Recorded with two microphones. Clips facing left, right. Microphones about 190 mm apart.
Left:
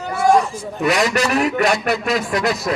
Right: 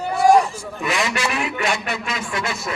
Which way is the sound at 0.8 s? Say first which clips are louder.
Left 6 dB; 40° left (ahead or behind).